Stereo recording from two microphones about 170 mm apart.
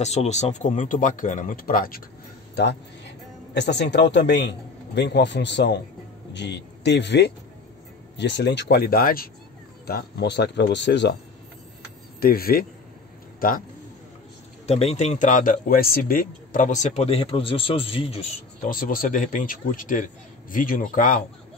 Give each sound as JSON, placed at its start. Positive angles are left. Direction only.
{"t": 0.0, "sound": "speech", "side_deg": 40}
{"t": 2.5, "sound": "a man's voice", "side_deg": 90}
{"t": 12.2, "sound": "speech", "side_deg": 60}
{"t": 14.7, "sound": "a man's voice", "side_deg": 35}
{"t": 18.7, "sound": "speech", "side_deg": 55}